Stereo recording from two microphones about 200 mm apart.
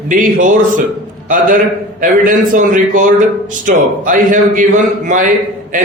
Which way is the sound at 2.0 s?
45° right (ahead or behind).